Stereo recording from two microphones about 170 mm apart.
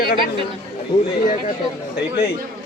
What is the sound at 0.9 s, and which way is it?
Speech, 25° left (ahead or behind).